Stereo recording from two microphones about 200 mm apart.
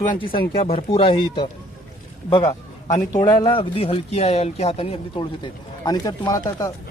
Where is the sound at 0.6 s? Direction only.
30° left (ahead or behind).